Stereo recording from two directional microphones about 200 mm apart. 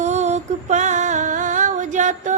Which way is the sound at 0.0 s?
35° right (ahead or behind).